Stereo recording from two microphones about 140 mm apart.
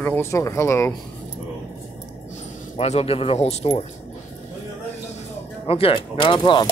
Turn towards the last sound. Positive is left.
turn(degrees=35)  # may be behind; listen again after turning